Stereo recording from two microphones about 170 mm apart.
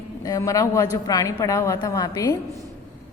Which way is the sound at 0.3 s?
20° left (ahead or behind).